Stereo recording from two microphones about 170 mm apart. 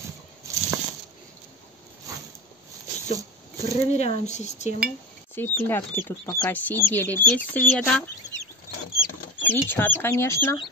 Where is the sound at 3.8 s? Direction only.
40° left (ahead or behind).